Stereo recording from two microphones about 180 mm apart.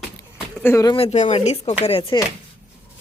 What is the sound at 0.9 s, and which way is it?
Speech, 35° left (ahead or behind).